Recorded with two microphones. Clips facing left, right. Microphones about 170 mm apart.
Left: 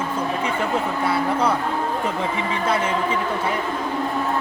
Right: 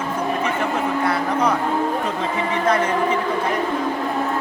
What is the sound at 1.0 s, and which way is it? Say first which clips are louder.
Speech: even; 10° left (ahead or behind).